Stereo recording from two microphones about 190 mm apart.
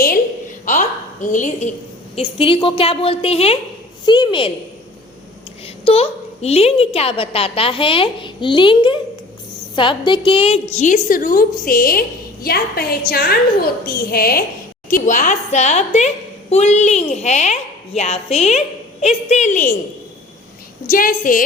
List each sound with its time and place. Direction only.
0.6 s a woman's voice: 40° left (ahead or behind)
2.1 s a woman's voice: 25° left (ahead or behind)
5.6 s a woman's voice: 30° left (ahead or behind)
20.9 s a woman's voice: 45° left (ahead or behind)